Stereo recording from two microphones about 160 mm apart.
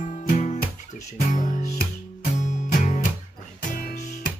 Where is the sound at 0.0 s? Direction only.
50° left (ahead or behind).